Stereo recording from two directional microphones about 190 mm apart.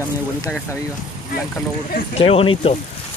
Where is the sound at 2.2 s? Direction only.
30° left (ahead or behind).